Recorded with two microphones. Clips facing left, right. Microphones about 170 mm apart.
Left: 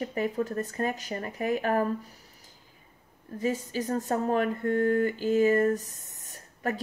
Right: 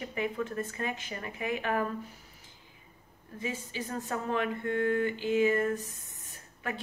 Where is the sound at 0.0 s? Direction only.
40° left (ahead or behind).